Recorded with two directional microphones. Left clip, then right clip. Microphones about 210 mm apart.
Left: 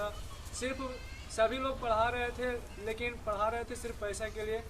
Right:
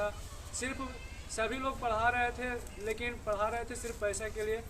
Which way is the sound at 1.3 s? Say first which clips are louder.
Left 4 dB; 10° right (ahead or behind).